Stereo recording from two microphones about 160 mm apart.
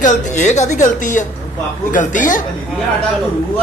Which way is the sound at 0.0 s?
50° left (ahead or behind).